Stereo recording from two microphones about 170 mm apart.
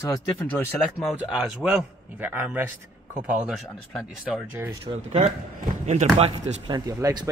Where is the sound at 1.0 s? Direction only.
Centre (ahead or behind).